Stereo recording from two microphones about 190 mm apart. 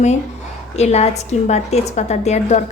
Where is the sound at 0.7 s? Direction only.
35° left (ahead or behind).